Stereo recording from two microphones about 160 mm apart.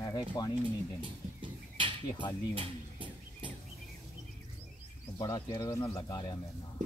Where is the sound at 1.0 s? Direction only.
30° right (ahead or behind).